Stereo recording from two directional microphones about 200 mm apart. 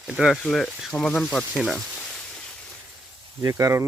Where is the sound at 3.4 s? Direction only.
15° right (ahead or behind).